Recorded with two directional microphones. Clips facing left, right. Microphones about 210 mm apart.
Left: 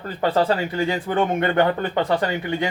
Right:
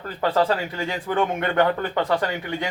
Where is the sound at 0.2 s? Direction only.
20° left (ahead or behind).